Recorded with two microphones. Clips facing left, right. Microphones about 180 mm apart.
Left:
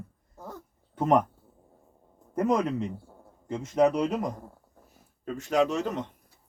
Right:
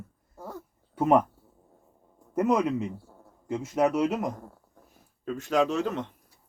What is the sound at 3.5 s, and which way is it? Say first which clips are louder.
Mantra: left 2 dB; 5° right (ahead or behind).